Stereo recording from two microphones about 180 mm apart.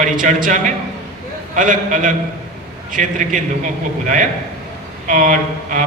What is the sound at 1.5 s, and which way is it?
A man's voice, 45° right (ahead or behind).